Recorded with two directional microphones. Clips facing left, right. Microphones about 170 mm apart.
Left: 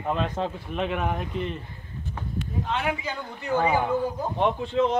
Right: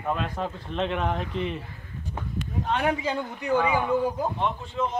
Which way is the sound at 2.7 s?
40° right (ahead or behind).